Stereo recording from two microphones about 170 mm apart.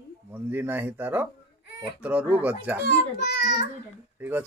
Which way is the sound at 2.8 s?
85° left.